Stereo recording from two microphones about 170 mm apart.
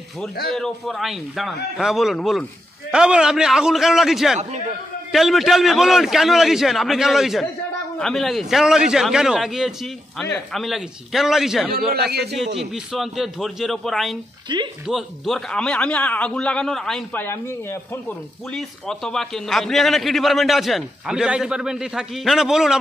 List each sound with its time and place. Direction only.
0.5 s a man's voice: 5° left (ahead or behind)
11.9 s a man's voice: 70° right (ahead or behind)
12.5 s a man's voice: centre (ahead or behind)
14.5 s speech: 25° right (ahead or behind)
14.9 s a man's voice: centre (ahead or behind)
18.5 s a man's voice: 5° left (ahead or behind)